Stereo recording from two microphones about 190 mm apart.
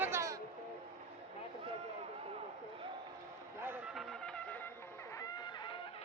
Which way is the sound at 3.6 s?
10° right (ahead or behind).